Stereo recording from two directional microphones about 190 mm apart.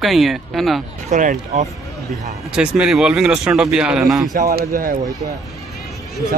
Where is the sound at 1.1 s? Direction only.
40° right (ahead or behind).